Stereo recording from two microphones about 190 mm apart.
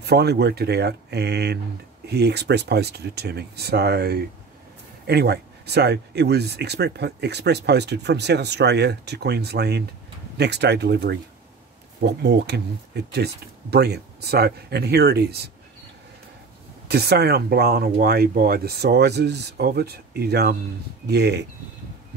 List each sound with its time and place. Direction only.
0.0 s speech: 60° right (ahead or behind)
16.8 s speech: 60° right (ahead or behind)